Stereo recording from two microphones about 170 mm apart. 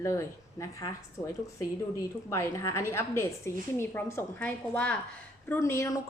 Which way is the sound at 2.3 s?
15° left (ahead or behind).